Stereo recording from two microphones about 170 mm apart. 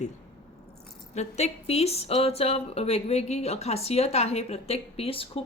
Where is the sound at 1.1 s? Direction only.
40° left (ahead or behind).